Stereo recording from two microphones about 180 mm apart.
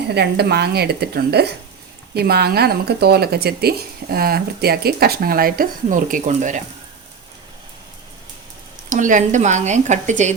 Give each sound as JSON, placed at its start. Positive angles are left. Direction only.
{"t": 0.1, "sound": "speech", "side_deg": -65}
{"t": 8.9, "sound": "speech", "side_deg": -45}